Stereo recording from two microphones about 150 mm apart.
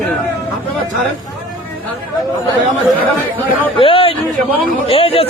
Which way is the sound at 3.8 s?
35° left (ahead or behind).